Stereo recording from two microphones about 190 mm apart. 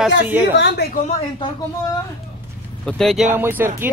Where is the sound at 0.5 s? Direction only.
60° left (ahead or behind).